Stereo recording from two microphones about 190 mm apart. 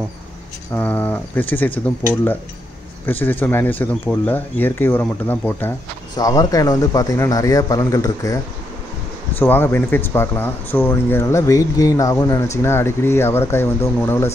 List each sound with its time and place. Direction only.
0.7 s speech: 10° left (ahead or behind)
3.1 s a man's voice: 10° left (ahead or behind)
9.4 s speech: 10° left (ahead or behind)